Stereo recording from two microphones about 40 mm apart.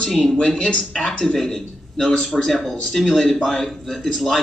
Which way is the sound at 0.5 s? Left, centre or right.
Left.